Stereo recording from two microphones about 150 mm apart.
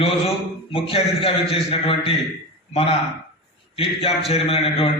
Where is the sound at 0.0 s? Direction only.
40° left (ahead or behind).